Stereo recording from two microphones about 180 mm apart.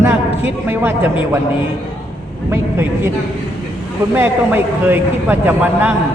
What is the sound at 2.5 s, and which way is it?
Speech, 15° right (ahead or behind).